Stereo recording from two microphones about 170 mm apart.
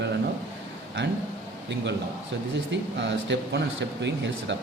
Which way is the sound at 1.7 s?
90° right.